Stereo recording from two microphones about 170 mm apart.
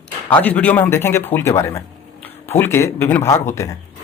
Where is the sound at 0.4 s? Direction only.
10° left (ahead or behind).